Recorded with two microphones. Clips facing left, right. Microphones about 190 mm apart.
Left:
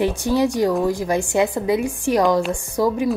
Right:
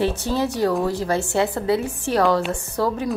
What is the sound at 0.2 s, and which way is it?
A woman's voice, 15° left (ahead or behind).